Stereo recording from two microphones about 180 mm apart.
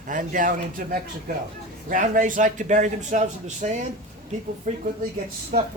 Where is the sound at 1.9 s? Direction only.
50° right (ahead or behind).